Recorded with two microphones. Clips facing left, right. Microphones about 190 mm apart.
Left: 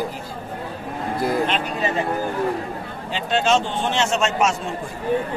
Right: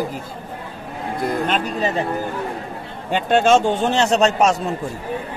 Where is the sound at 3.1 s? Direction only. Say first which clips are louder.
Right 5 dB; 50° right (ahead or behind).